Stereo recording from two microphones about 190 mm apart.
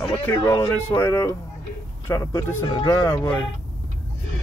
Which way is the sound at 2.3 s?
25° left (ahead or behind).